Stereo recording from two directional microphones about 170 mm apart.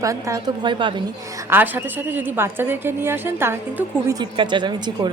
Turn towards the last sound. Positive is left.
turn(degrees=-25)  # may be behind; listen again after turning